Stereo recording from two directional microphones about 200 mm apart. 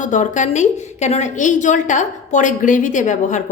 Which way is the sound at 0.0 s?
40° left (ahead or behind).